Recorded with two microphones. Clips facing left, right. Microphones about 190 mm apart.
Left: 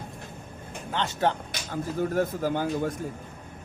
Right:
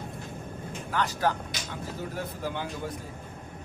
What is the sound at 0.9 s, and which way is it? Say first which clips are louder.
Speech: left 1 dB; 25° left (ahead or behind).